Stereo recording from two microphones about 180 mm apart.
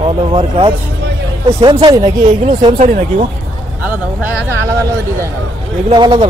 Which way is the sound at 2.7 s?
45° right (ahead or behind).